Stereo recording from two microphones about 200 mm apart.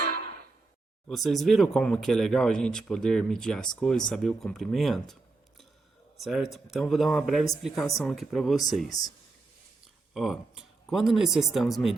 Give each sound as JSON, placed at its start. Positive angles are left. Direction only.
{"t": 1.0, "sound": "speech", "side_deg": 0}
{"t": 6.1, "sound": "speech", "side_deg": 0}
{"t": 8.9, "sound": "speech", "side_deg": 15}
{"t": 10.2, "sound": "speech", "side_deg": 0}